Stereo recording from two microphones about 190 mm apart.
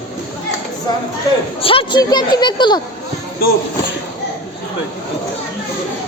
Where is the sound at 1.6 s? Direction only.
30° left (ahead or behind).